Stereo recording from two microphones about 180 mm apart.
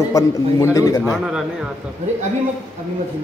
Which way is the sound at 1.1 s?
5° right (ahead or behind).